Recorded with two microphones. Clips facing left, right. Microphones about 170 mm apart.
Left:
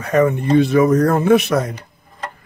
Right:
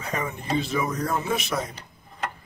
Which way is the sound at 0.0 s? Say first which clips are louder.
Left 15 dB; 65° left (ahead or behind).